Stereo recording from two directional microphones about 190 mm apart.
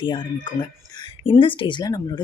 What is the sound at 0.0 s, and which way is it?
Speech, 25° left (ahead or behind).